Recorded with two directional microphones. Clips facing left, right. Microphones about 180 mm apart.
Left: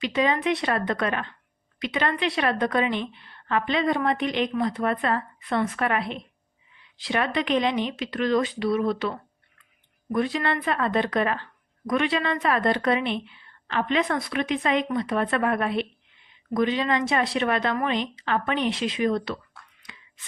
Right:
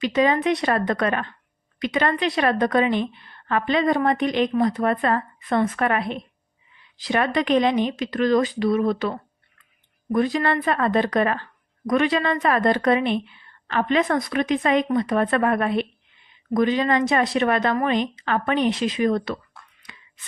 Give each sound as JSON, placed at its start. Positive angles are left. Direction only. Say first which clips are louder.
{"t": 0.0, "sound": "a woman's voice", "louder": "right 4 dB", "side_deg": -45}